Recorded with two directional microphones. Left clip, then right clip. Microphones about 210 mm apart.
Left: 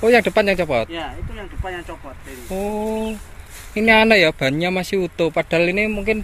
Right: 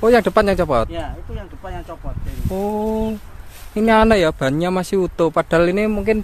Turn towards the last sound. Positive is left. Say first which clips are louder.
# right 2 dB
turn(degrees=-35)  # may be behind; listen again after turning